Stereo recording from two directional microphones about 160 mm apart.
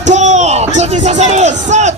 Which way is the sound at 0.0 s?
50° right (ahead or behind).